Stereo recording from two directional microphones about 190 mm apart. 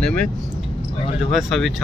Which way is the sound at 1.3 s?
Centre (ahead or behind).